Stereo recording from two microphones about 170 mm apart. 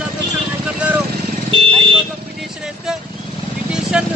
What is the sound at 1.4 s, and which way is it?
Speech, 30° right (ahead or behind).